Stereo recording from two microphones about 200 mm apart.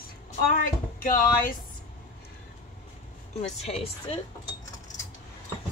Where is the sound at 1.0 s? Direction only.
45° left (ahead or behind).